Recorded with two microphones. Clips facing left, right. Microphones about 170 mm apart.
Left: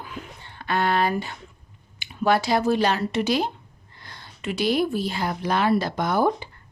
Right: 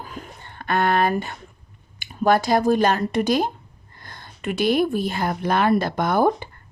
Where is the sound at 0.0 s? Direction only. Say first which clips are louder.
Right 1 dB; 45° right (ahead or behind).